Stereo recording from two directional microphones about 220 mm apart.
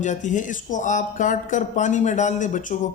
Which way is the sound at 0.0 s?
35° left (ahead or behind).